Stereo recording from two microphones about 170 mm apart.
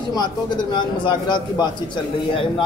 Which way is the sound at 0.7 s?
25° left (ahead or behind).